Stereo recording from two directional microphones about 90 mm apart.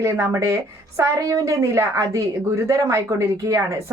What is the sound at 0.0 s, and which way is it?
A woman's voice, 30° right (ahead or behind).